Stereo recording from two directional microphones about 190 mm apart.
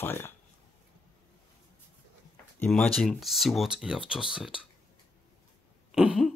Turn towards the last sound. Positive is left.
turn(degrees=-5)  # may be behind; listen again after turning